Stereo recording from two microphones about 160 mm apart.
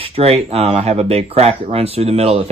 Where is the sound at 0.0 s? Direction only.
40° right (ahead or behind).